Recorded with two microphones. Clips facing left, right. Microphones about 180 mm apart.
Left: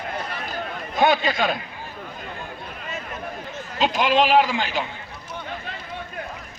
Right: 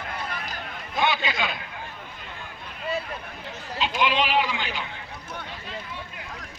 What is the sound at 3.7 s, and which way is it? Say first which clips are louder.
A man's voice: left 5 dB; 45° left (ahead or behind).